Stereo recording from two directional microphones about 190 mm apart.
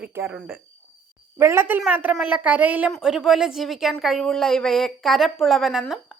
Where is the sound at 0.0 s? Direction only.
10° right (ahead or behind).